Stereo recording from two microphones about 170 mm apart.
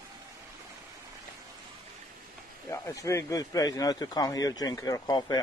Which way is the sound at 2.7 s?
20° left (ahead or behind).